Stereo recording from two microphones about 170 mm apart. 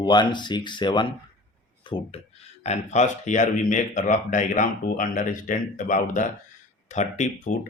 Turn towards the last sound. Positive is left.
turn(degrees=45)  # may be behind; listen again after turning